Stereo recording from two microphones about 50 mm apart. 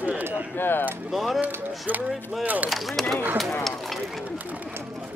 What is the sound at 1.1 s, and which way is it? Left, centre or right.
Speech, centre.